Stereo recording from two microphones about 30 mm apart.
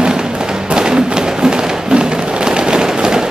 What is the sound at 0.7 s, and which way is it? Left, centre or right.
Music, right.